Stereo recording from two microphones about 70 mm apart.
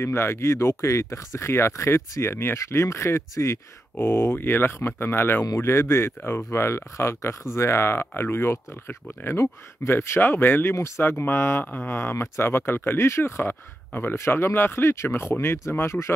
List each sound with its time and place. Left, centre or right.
0.0 s speech: left
1.5 s speech: left
11.6 s a sound: left
12.0 s speech: left